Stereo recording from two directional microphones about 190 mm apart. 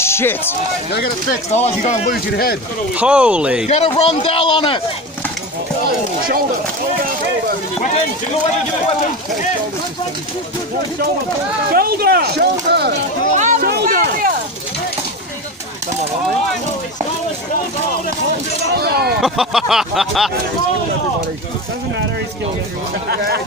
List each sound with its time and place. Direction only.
0.0 s speech: 10° left (ahead or behind)
1.5 s speech: 35° left (ahead or behind)
2.1 s speech: 55° left (ahead or behind)
3.0 s a sound: 5° right (ahead or behind)
3.6 s a man's voice: 35° left (ahead or behind)
5.9 s chop: 50° right (ahead or behind)
11.7 s speech: 55° right (ahead or behind)
12.9 s speech: 40° right (ahead or behind)
13.6 s a sound: 60° right (ahead or behind)
18.8 s speech: 55° right (ahead or behind)
19.2 s a sound: centre (ahead or behind)
23.0 s speech: 55° right (ahead or behind)